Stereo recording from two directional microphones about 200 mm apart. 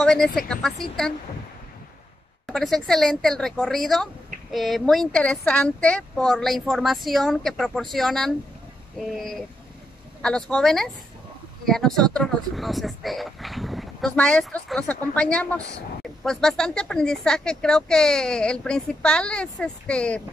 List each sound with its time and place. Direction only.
0.0 s a woman's voice: 5° left (ahead or behind)
2.4 s a woman's voice: centre (ahead or behind)
10.2 s a woman's voice: 5° left (ahead or behind)